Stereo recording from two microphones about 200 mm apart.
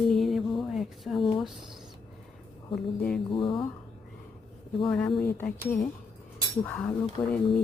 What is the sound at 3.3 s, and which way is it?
Speech, 25° left (ahead or behind).